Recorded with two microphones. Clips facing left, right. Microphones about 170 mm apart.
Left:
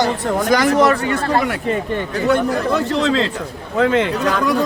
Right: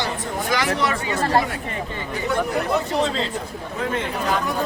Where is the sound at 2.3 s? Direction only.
90° left.